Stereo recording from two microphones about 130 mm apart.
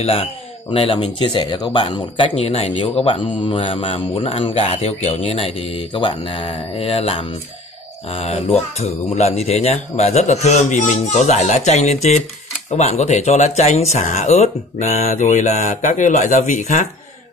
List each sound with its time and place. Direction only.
0.0 s a man's voice: 50° left (ahead or behind); by 16.8 s 70° left (ahead or behind)